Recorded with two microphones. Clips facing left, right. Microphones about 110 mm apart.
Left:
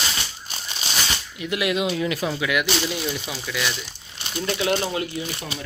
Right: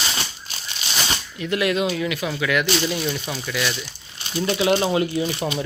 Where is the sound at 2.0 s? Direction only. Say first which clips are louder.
Left 1 dB; 30° left (ahead or behind).